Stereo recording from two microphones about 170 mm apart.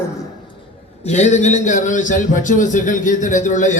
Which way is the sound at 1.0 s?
40° left (ahead or behind).